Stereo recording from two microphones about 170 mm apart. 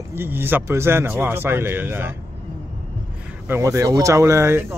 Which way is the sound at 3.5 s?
15° right (ahead or behind).